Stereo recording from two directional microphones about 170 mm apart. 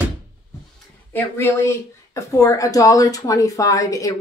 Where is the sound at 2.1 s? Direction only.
20° left (ahead or behind).